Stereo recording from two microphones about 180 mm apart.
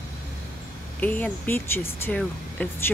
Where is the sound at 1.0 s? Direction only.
10° left (ahead or behind).